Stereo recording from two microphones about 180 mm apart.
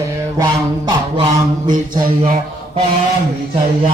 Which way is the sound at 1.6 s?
50° right (ahead or behind).